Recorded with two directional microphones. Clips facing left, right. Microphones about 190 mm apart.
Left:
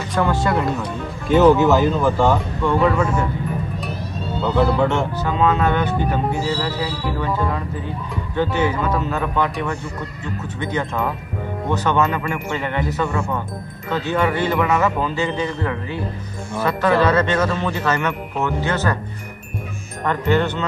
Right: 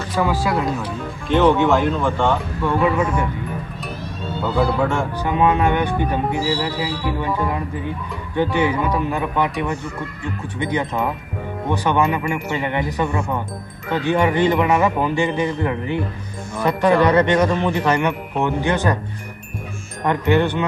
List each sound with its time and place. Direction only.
0.1 s speech: 5° right (ahead or behind)
2.6 s speech: 10° right (ahead or behind)
4.6 s speech: centre (ahead or behind)
5.2 s speech: 15° right (ahead or behind)
20.0 s speech: 15° right (ahead or behind)